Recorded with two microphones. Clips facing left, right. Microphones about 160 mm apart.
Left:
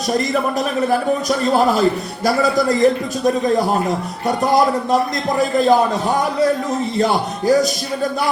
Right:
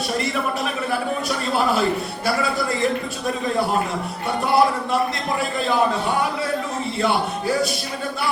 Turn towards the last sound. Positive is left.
turn(degrees=40)  # may be behind; listen again after turning